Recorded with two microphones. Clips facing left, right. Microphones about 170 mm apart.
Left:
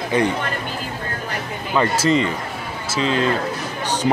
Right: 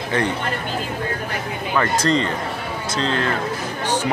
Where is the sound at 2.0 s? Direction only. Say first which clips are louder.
Left 1 dB; 10° left (ahead or behind).